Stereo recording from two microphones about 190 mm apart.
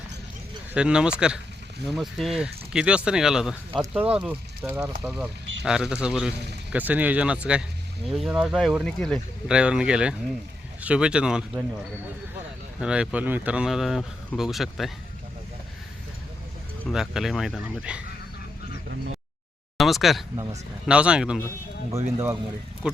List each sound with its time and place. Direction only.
0.7 s speech: 5° right (ahead or behind)
12.8 s speech: 5° right (ahead or behind)
16.8 s speech: centre (ahead or behind)
19.7 s speech: centre (ahead or behind)
20.3 s speech: 20° right (ahead or behind)
20.8 s speech: 5° right (ahead or behind)